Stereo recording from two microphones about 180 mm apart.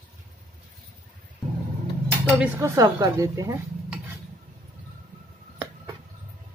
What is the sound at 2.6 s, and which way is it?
Speech, 15° right (ahead or behind).